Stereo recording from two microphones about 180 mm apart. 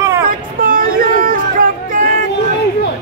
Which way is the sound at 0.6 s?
50° right (ahead or behind).